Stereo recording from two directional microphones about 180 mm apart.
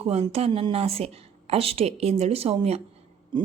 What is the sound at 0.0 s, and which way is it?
A woman's voice, 35° right (ahead or behind).